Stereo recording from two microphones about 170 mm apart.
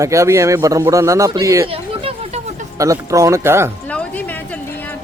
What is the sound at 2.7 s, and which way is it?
Speech, 20° right (ahead or behind).